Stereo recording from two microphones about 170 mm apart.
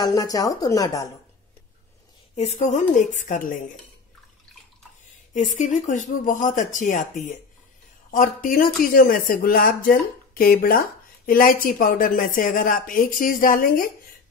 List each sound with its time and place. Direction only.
0.0 s speech: 20° left (ahead or behind)
2.3 s speech: 40° left (ahead or behind)
5.3 s speech: 50° left (ahead or behind)